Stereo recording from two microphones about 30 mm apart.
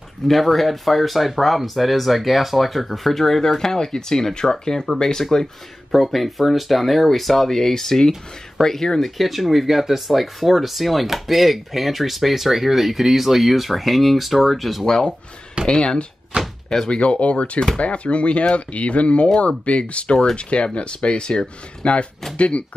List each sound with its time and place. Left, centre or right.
0.3 s speech: centre
5.9 s speech: centre
9.2 s speech: centre
15.6 s speech: right
16.3 s speech: right
16.9 s speech: left
21.8 s speech: left